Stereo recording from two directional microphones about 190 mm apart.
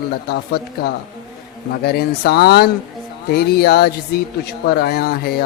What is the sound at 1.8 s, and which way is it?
A man's voice, 55° left (ahead or behind).